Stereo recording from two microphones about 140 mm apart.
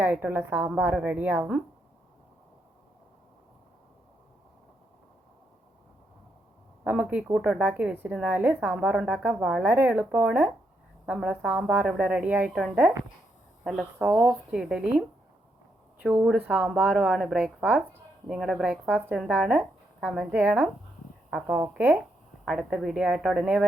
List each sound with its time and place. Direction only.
0.0 s a woman's voice: 15° right (ahead or behind)
6.8 s a woman's voice: 10° right (ahead or behind)
16.0 s a woman's voice: 5° right (ahead or behind)
22.4 s speech: centre (ahead or behind)